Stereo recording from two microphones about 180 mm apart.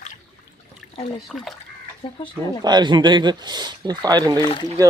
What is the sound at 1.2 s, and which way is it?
Speech, centre (ahead or behind).